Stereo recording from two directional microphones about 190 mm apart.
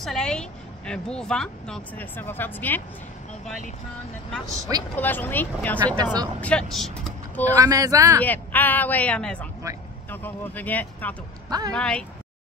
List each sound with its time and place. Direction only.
0.0 s speech: 5° left (ahead or behind)
4.9 s speech: 10° left (ahead or behind)
7.5 s speech: 20° right (ahead or behind)
8.2 s speech: 10° left (ahead or behind)
11.4 s a woman's voice: 20° right (ahead or behind)
11.7 s speech: 5° left (ahead or behind)